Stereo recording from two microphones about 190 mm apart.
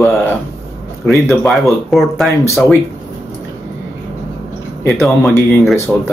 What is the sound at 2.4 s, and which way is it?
Speech, 15° left (ahead or behind).